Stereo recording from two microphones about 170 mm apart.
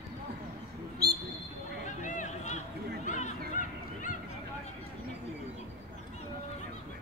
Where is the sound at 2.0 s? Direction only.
45° left (ahead or behind).